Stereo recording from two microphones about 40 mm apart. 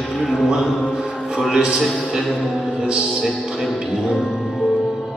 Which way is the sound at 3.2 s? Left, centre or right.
Centre.